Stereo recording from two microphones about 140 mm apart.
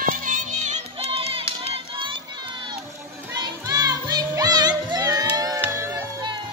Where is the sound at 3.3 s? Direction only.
30° right (ahead or behind).